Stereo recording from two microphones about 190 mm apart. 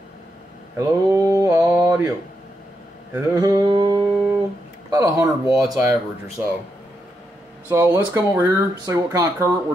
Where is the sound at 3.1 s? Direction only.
20° right (ahead or behind).